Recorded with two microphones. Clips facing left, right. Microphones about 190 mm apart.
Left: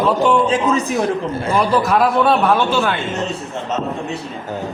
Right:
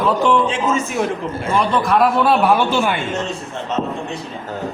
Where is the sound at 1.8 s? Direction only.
Centre (ahead or behind).